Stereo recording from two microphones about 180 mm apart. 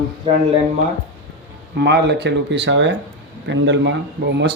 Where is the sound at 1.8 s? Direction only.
70° right (ahead or behind).